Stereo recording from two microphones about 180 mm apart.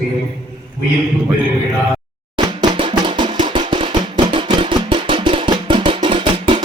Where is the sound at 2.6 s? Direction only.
25° right (ahead or behind).